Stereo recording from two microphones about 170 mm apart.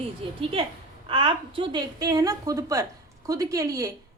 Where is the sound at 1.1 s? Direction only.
30° right (ahead or behind).